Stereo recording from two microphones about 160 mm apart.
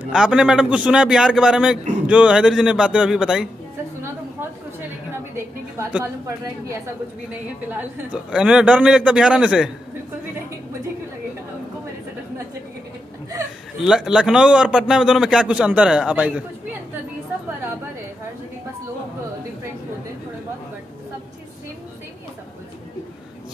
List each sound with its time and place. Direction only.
0.1 s a man's voice: 5° right (ahead or behind)
5.1 s a man's voice: 15° right (ahead or behind)
13.7 s a man's voice: 5° right (ahead or behind)